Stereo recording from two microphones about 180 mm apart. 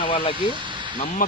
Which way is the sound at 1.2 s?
50° left (ahead or behind).